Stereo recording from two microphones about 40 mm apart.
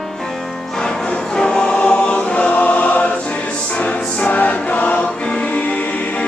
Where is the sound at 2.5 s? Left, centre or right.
Left.